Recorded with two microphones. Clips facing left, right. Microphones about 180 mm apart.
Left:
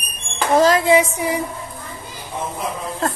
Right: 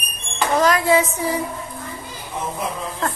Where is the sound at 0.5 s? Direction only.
25° left (ahead or behind).